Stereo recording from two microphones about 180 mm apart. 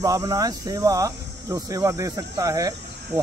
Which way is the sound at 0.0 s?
20° right (ahead or behind).